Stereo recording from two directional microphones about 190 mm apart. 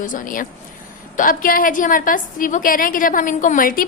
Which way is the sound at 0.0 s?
45° left (ahead or behind).